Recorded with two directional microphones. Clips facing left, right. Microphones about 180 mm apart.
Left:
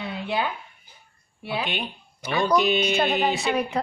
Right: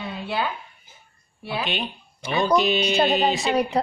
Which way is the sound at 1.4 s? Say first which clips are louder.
Even; 15° left (ahead or behind).